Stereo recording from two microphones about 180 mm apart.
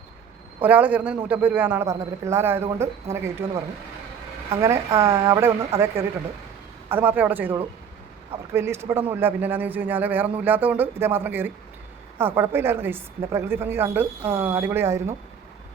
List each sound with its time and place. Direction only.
0.6 s speech: 10° right (ahead or behind)
4.6 s speech: 15° right (ahead or behind)